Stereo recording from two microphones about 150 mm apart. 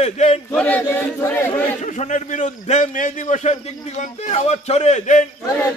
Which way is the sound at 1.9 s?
55° left (ahead or behind).